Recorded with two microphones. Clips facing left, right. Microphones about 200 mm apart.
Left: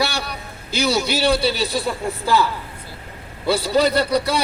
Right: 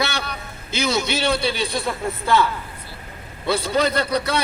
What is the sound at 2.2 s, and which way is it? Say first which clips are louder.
Speech: even; 5° left (ahead or behind).